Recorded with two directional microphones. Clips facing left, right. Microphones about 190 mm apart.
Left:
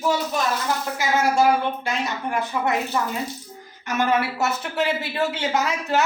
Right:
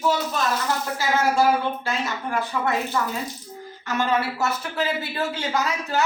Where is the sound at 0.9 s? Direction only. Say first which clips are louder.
Left 1 dB; 20° left (ahead or behind).